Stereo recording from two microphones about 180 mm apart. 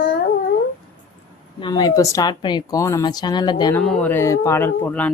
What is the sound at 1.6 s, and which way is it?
A woman's voice, 20° left (ahead or behind).